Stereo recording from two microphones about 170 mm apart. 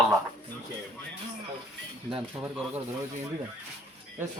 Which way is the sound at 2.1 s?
5° right (ahead or behind).